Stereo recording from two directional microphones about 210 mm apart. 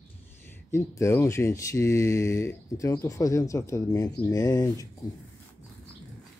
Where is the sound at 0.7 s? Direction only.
15° left (ahead or behind).